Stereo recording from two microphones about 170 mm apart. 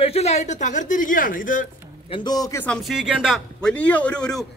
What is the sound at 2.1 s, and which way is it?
Speech, 25° left (ahead or behind).